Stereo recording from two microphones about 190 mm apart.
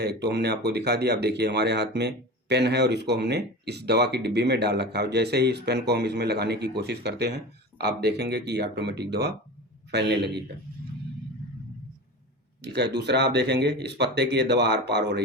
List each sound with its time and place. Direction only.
0.0 s speech: 60° right (ahead or behind)
12.6 s speech: 65° right (ahead or behind)